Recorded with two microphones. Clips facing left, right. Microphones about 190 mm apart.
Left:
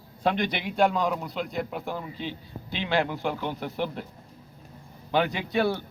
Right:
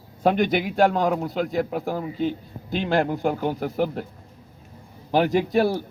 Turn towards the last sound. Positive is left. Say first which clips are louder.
# right 6 dB
turn(degrees=-40)  # may be behind; listen again after turning